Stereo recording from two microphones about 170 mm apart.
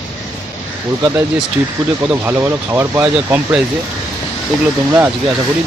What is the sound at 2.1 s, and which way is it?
Speech, 10° right (ahead or behind).